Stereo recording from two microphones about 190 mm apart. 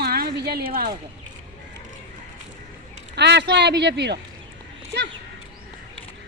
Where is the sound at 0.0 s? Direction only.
55° right (ahead or behind).